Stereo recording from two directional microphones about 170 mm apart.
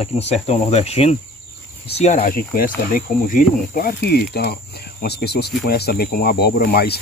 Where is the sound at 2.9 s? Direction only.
55° left (ahead or behind).